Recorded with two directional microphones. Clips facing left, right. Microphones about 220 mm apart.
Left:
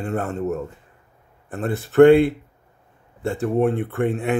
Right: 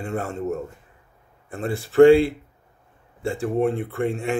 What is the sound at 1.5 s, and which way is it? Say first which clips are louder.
Speech: left 2 dB; centre (ahead or behind).